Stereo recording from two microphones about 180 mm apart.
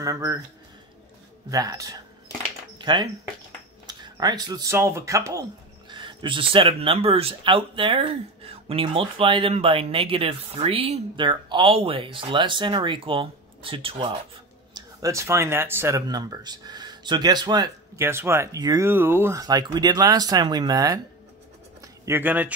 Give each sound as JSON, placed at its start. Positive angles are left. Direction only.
{"t": 0.0, "sound": "speech", "side_deg": -20}
{"t": 1.5, "sound": "speech", "side_deg": -20}